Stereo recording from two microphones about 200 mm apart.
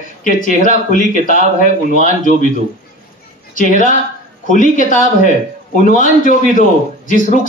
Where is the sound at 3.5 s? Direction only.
40° left (ahead or behind).